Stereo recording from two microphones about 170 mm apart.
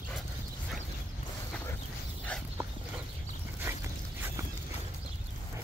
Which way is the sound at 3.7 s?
15° right (ahead or behind).